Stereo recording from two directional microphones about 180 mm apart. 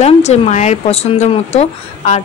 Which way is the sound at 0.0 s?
35° left (ahead or behind).